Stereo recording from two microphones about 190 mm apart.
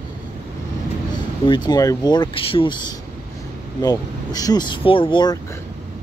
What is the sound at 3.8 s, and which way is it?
Speech, 20° left (ahead or behind).